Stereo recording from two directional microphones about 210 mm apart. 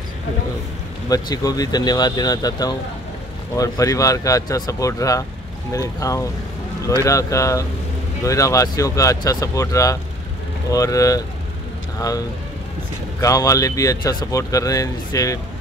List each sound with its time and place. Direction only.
1.0 s speech: 15° left (ahead or behind)
13.2 s speech: 15° left (ahead or behind)